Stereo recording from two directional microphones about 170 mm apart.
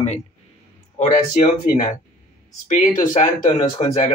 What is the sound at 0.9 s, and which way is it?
Speech, 45° left (ahead or behind).